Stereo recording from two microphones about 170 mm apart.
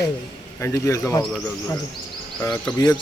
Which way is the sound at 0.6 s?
15° left (ahead or behind).